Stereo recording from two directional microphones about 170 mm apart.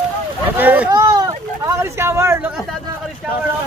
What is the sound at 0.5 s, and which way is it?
Speech, 10° right (ahead or behind).